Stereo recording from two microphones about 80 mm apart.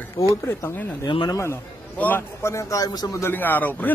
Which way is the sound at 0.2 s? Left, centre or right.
Left.